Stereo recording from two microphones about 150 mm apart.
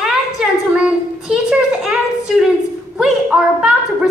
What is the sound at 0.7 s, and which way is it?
A woman's voice, 5° right (ahead or behind).